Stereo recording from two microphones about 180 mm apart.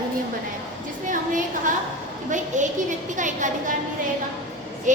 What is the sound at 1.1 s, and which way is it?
A woman's voice, 45° right (ahead or behind).